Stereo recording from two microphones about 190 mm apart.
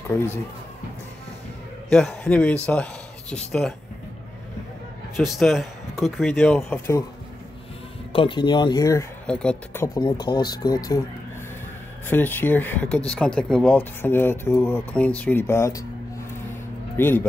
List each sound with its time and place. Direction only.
1.9 s speech: centre (ahead or behind)
5.2 s speech: centre (ahead or behind)
8.1 s speech: 25° left (ahead or behind)
9.2 s speech: 5° left (ahead or behind)
9.9 s speech: 25° left (ahead or behind)
12.1 s speech: 10° left (ahead or behind)
16.9 s speech: 10° left (ahead or behind)